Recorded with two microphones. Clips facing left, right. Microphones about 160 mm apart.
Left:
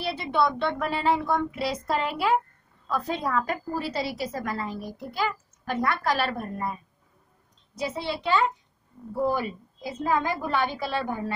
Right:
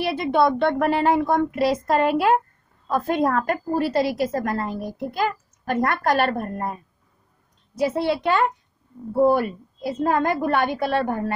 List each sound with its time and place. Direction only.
0.0 s speech: 55° right (ahead or behind)
7.8 s a woman's voice: 60° right (ahead or behind)